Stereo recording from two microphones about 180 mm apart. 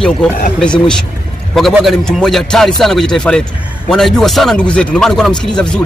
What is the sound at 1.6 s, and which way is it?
A man's voice, centre (ahead or behind).